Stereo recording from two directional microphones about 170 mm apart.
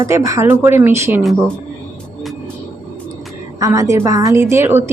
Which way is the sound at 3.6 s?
20° right (ahead or behind).